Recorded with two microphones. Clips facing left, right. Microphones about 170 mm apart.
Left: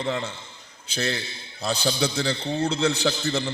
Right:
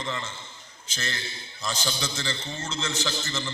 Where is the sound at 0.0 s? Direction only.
60° left (ahead or behind).